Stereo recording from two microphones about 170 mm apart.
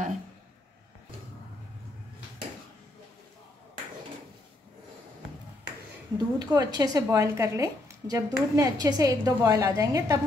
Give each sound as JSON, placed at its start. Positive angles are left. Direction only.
{"t": 6.1, "sound": "speech", "side_deg": -20}